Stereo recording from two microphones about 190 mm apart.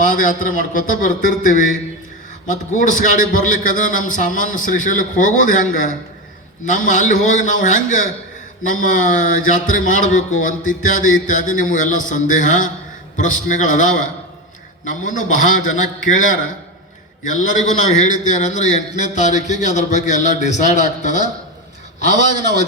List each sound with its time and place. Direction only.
0.0 s a man's voice: 45° left (ahead or behind)